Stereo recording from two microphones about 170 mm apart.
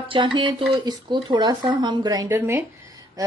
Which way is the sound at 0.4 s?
30° right (ahead or behind).